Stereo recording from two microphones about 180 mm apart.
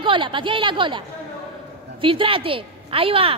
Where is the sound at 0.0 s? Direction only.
30° right (ahead or behind).